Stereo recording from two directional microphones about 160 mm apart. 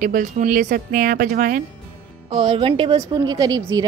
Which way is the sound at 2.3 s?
30° right (ahead or behind).